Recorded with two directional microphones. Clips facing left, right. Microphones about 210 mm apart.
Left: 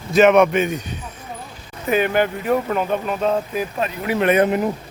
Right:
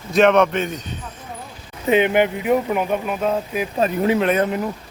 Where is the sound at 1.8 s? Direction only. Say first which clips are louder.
Right 2 dB; 20° right (ahead or behind); by 3.6 s 5° right (ahead or behind).